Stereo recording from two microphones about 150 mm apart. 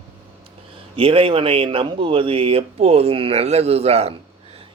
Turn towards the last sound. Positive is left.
turn(degrees=-45)  # may be behind; listen again after turning